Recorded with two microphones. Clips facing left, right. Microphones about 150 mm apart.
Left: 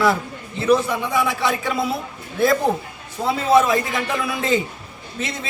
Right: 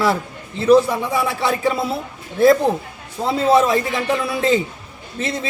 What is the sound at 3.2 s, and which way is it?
A man's voice, 30° right (ahead or behind).